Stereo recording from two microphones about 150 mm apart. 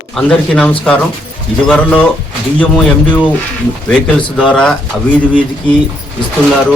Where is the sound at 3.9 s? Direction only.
5° left (ahead or behind).